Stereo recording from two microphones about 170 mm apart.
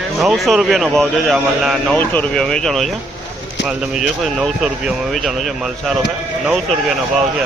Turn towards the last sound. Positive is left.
turn(degrees=0)  # may be behind; listen again after turning